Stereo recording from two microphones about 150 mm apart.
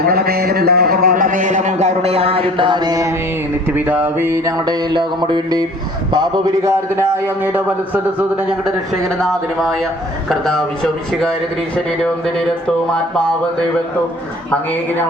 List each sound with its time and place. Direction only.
0.0 s a man's voice: 85° right; by 3.2 s 25° right (ahead or behind)
3.7 s a sound: 10° right (ahead or behind)
4.2 s a man's voice: 20° right (ahead or behind)
8.6 s speech: centre (ahead or behind)